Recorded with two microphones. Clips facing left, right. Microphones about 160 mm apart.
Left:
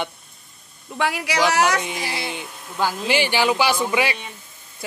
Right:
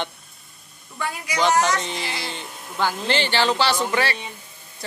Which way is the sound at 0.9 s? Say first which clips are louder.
Left 4 dB; 90° left.